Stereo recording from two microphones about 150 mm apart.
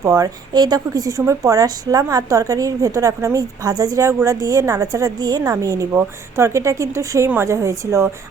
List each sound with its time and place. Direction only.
0.0 s speech: 25° right (ahead or behind)